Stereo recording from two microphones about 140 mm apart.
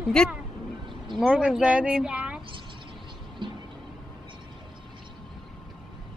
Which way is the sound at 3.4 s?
35° right (ahead or behind).